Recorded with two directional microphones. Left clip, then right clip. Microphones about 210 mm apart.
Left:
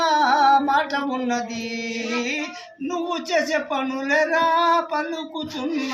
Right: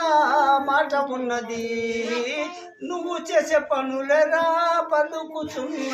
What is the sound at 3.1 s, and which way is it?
Singing, 20° right (ahead or behind).